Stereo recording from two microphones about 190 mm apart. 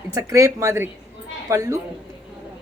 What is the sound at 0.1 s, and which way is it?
A woman's voice, 15° right (ahead or behind).